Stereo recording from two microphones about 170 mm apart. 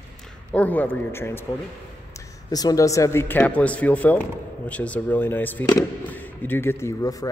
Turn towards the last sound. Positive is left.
turn(degrees=20)  # may be behind; listen again after turning